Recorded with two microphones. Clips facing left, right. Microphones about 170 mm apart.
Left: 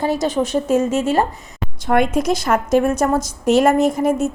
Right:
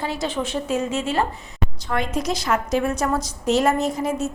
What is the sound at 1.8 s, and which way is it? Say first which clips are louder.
A woman's voice: left 8 dB; 55° left (ahead or behind).